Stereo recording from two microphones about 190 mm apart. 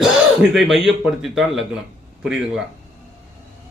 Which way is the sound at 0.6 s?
Centre (ahead or behind).